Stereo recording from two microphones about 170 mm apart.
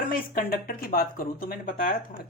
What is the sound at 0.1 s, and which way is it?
Speech, 55° left (ahead or behind).